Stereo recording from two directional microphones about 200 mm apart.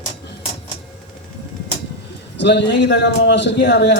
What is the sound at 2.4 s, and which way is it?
A man's voice, 60° left (ahead or behind).